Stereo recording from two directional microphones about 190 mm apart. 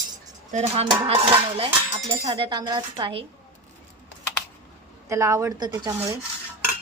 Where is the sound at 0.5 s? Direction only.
35° right (ahead or behind).